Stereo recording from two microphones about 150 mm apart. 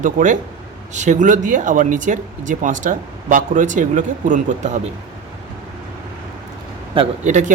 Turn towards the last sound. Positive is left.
turn(degrees=-55)  # may be behind; listen again after turning